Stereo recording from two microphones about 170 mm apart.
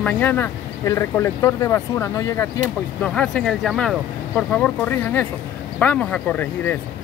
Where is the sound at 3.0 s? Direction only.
5° left (ahead or behind).